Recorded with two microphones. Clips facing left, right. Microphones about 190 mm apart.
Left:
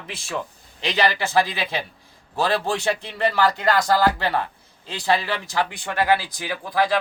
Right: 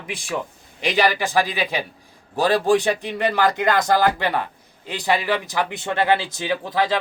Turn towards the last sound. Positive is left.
turn(degrees=-20)  # may be behind; listen again after turning